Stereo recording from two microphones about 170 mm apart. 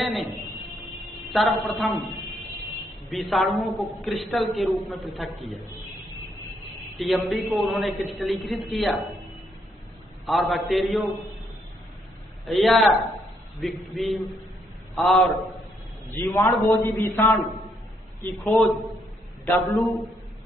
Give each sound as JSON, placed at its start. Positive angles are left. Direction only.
{"t": 0.0, "sound": "a sound", "side_deg": 0}
{"t": 1.3, "sound": "a man's voice", "side_deg": 0}
{"t": 3.1, "sound": "a man's voice", "side_deg": 0}
{"t": 7.0, "sound": "a man's voice", "side_deg": 0}
{"t": 10.2, "sound": "a man's voice", "side_deg": 0}
{"t": 12.4, "sound": "a man's voice", "side_deg": 0}
{"t": 16.1, "sound": "a man's voice", "side_deg": 15}
{"t": 18.4, "sound": "a man's voice", "side_deg": 0}